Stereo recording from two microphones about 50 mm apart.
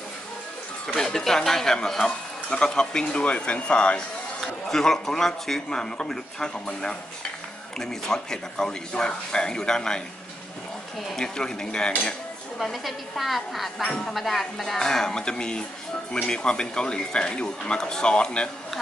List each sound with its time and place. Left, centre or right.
0.9 s a man's voice: centre
4.6 s a man's voice: centre
11.1 s a man's voice: centre
12.5 s a woman's voice: centre
13.8 s a man's voice: centre
14.1 s a man's voice: centre